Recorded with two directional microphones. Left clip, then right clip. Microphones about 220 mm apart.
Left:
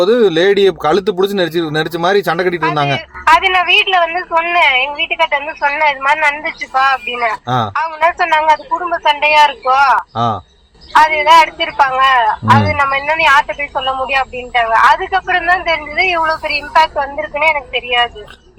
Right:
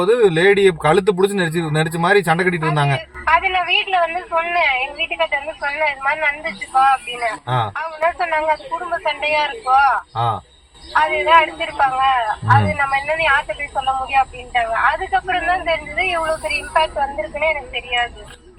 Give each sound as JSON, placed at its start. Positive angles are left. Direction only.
{"t": 0.0, "sound": "speech", "side_deg": 40}